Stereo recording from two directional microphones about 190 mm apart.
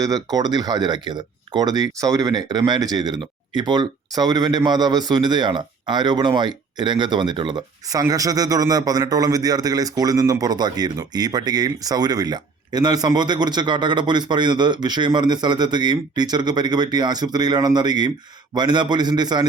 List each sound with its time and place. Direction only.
0.0 s speech: 20° right (ahead or behind)